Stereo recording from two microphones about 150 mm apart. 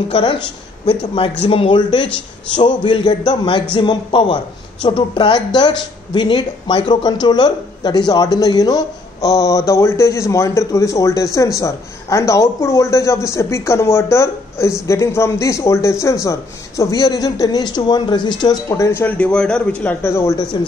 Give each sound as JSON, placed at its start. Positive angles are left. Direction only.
{"t": 0.1, "sound": "speech", "side_deg": 35}